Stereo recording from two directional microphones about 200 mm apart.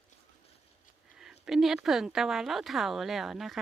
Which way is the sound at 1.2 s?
Centre (ahead or behind).